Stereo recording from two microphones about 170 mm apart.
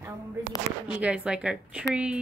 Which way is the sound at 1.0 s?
5° right (ahead or behind).